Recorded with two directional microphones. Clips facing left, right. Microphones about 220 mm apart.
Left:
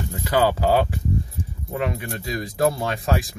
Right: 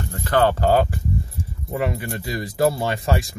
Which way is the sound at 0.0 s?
15° left (ahead or behind).